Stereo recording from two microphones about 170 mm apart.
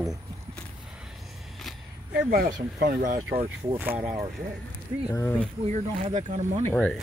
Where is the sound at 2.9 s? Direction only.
50° right (ahead or behind).